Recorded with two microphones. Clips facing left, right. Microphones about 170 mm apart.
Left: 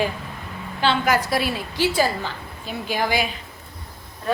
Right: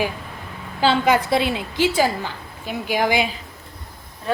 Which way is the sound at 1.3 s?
20° right (ahead or behind).